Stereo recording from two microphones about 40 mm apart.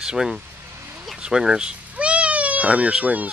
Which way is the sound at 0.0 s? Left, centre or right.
Centre.